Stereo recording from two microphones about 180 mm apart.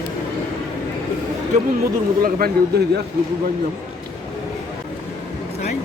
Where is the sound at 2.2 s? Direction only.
55° right (ahead or behind).